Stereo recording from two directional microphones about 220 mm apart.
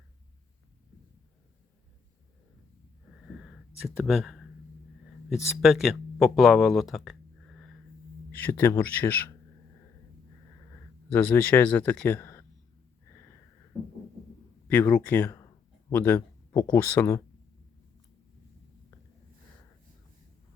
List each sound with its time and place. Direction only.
3.8 s speech: centre (ahead or behind)
11.1 s speech: 10° left (ahead or behind)
14.7 s speech: 10° left (ahead or behind)